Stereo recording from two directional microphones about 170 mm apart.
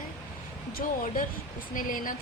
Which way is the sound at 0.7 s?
60° left (ahead or behind).